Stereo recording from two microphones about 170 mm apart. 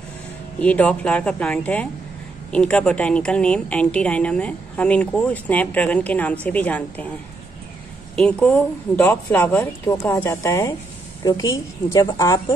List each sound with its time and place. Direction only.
0.6 s a woman's voice: 10° left (ahead or behind)
8.2 s a woman's voice: 5° left (ahead or behind); by 12.5 s 25° left (ahead or behind)